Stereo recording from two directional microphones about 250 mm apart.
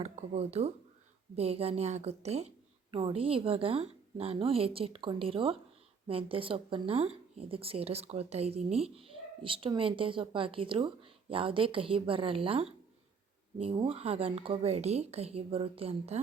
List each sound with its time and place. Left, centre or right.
0.0 s speech: right